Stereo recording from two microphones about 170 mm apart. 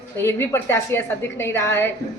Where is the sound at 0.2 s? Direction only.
15° left (ahead or behind).